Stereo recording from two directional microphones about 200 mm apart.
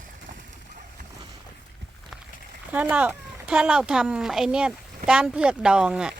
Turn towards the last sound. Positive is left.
turn(degrees=-5)  # may be behind; listen again after turning